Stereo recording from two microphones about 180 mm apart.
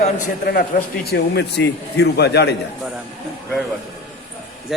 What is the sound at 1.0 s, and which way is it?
A man's voice, 65° left (ahead or behind).